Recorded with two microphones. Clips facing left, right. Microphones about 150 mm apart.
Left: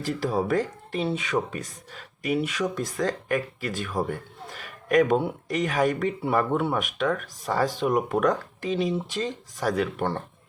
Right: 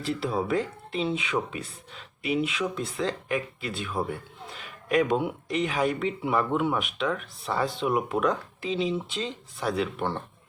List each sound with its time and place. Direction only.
0.1 s a man's voice: 45° left (ahead or behind)